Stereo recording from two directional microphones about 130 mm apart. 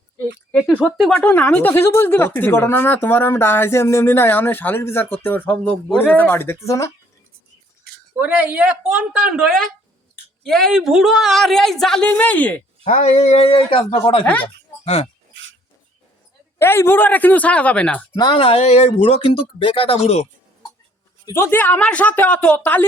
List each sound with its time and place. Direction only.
0.9 s speech: 5° left (ahead or behind); by 6.9 s 25° left (ahead or behind)
8.1 s a woman's voice: 10° right (ahead or behind); by 12.6 s 10° left (ahead or behind)
12.8 s speech: 65° left (ahead or behind); by 14.3 s 40° left (ahead or behind)
14.3 s speech: 10° left (ahead or behind)
16.6 s speech: 20° left (ahead or behind)
18.2 s speech: 40° left (ahead or behind); by 20.2 s 55° left (ahead or behind)
21.3 s speech: 20° left (ahead or behind)